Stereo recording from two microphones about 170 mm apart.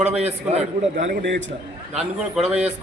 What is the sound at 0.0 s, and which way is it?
A man's voice, 40° right (ahead or behind).